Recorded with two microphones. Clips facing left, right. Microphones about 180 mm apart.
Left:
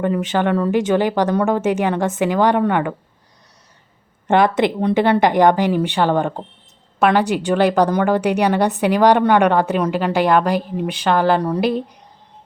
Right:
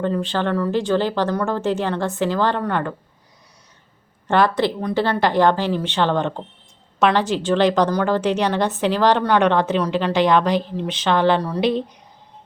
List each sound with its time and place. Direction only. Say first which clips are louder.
0.0 s a woman's voice: left 3 dB; 15° left (ahead or behind)
4.3 s a woman's voice: left 3 dB; 20° left (ahead or behind)